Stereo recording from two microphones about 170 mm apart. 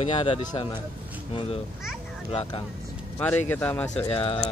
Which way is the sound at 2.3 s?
30° left (ahead or behind).